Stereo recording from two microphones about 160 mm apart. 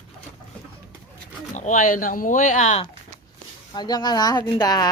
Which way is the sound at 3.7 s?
25° left (ahead or behind).